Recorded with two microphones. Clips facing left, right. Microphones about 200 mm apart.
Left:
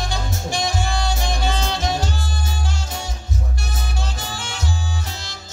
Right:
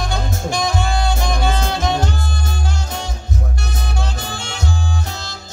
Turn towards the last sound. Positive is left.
turn(degrees=-55)  # may be behind; listen again after turning